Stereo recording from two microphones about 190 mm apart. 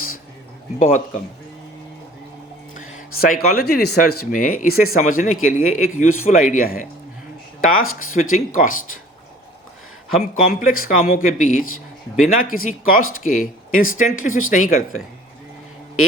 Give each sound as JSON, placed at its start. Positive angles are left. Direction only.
{"t": 0.8, "sound": "speech", "side_deg": 45}
{"t": 3.2, "sound": "speech", "side_deg": 50}
{"t": 10.4, "sound": "speech", "side_deg": 50}